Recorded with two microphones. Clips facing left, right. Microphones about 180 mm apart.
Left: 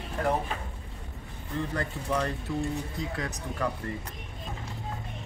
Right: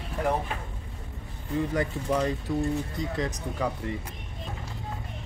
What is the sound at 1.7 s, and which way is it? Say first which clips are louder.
Speech: right 2 dB; 15° right (ahead or behind).